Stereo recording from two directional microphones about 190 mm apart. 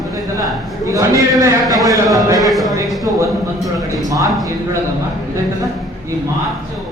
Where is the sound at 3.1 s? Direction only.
15° right (ahead or behind).